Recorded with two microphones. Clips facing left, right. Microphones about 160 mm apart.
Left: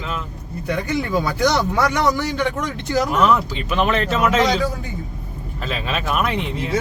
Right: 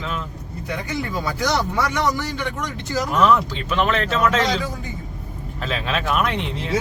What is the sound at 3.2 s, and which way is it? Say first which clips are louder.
Speech: right 4 dB; 5° left (ahead or behind).